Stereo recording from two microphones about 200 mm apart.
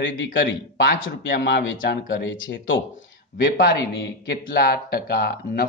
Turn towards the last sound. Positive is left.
turn(degrees=50)  # may be behind; listen again after turning